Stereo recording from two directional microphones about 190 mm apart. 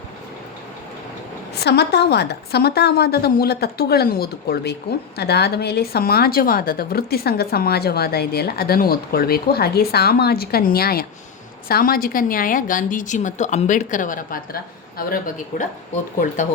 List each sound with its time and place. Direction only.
1.5 s a woman's voice: 60° left (ahead or behind); by 16.5 s 45° left (ahead or behind)